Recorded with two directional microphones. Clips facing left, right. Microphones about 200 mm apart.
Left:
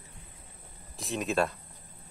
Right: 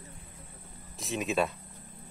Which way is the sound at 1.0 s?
Centre (ahead or behind).